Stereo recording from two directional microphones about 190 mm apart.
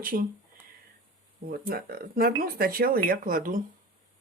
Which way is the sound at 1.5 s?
50° right (ahead or behind).